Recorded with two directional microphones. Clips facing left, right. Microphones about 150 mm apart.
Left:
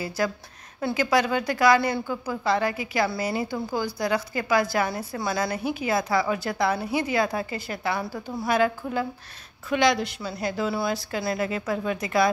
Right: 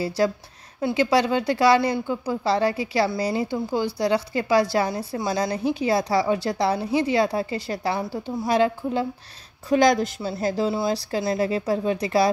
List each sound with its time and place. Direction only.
0.0 s a woman's voice: 30° right (ahead or behind)
4.8 s a woman's voice: 20° right (ahead or behind)
8.0 s a woman's voice: 20° right (ahead or behind)
9.7 s a woman's voice: 45° right (ahead or behind)
10.2 s a woman's voice: 30° right (ahead or behind)